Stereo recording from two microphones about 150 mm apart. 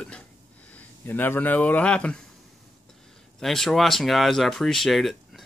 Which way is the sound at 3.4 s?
Centre (ahead or behind).